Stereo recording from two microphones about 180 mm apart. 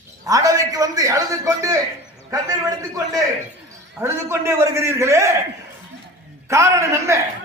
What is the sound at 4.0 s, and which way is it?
A man's voice, 15° right (ahead or behind).